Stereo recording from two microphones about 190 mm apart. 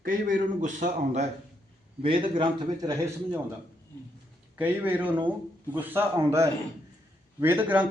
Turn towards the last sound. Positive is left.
turn(degrees=-10)  # may be behind; listen again after turning